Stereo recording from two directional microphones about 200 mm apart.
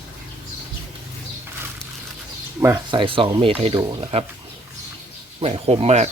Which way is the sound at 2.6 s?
15° right (ahead or behind).